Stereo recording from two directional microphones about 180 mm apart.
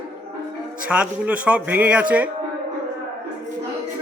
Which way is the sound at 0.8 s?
5° right (ahead or behind).